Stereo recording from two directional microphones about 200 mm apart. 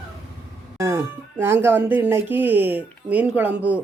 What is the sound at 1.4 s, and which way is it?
Speech, 10° right (ahead or behind).